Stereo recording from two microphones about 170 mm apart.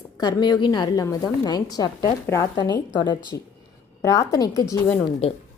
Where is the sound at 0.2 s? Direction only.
25° left (ahead or behind).